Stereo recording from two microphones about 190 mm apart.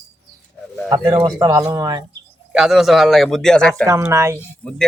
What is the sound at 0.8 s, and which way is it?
Speech, 20° right (ahead or behind).